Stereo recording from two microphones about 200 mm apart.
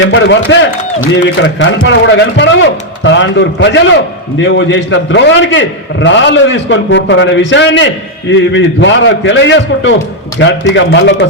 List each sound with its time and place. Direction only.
0.0 s a man's voice: 65° left (ahead or behind)